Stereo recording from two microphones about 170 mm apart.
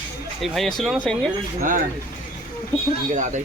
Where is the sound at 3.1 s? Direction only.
45° right (ahead or behind).